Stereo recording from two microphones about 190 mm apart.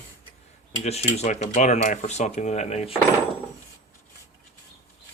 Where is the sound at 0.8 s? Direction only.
35° left (ahead or behind).